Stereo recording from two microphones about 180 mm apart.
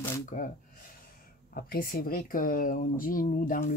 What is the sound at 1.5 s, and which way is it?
Speech, 55° left (ahead or behind).